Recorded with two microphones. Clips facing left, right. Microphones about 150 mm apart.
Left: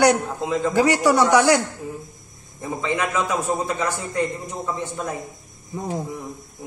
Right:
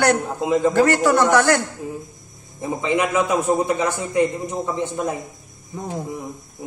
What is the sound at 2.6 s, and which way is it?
A man's voice, 15° right (ahead or behind).